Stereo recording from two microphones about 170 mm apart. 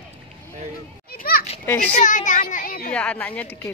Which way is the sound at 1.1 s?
60° left (ahead or behind).